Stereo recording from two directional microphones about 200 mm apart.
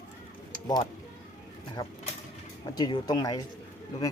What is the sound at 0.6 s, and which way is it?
Speech, 20° left (ahead or behind).